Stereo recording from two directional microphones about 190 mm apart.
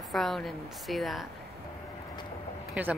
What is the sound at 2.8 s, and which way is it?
Speech, 10° right (ahead or behind).